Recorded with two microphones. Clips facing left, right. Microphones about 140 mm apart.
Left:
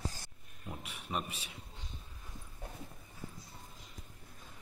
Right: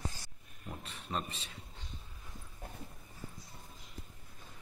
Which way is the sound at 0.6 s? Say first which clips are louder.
Even; 5° left (ahead or behind).